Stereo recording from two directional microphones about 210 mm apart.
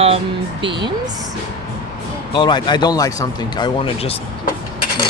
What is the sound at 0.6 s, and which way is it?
Speech, 25° right (ahead or behind).